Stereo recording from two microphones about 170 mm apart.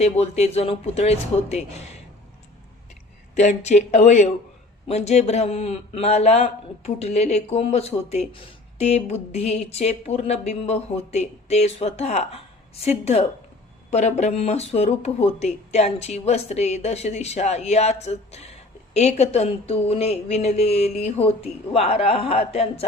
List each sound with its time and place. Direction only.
0.0 s speech: 40° left (ahead or behind)
3.3 s speech: 40° left (ahead or behind)